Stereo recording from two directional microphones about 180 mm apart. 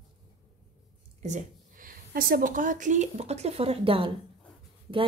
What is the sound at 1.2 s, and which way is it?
A woman's voice, 45° right (ahead or behind).